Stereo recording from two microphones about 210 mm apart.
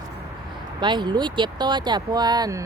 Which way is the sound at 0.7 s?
20° right (ahead or behind).